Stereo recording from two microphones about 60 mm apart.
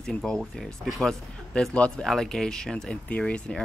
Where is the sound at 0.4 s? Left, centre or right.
Centre.